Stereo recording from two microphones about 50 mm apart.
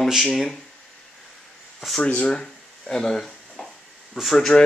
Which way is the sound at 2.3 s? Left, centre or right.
Centre.